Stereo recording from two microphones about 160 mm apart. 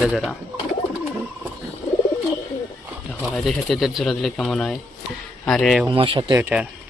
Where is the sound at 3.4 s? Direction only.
Centre (ahead or behind).